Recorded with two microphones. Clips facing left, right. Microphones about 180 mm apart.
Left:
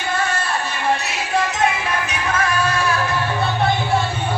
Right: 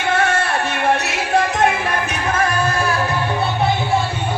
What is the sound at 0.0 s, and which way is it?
Music, 70° right (ahead or behind).